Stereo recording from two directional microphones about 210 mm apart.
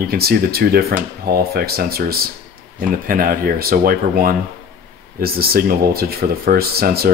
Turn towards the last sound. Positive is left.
turn(degrees=-45)  # may be behind; listen again after turning